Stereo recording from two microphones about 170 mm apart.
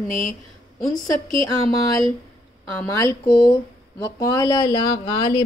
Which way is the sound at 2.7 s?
15° left (ahead or behind).